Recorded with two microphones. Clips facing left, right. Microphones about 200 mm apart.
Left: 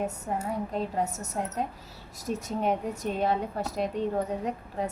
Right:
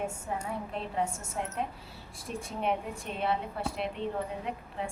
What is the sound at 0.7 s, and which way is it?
A woman's voice, 40° left (ahead or behind).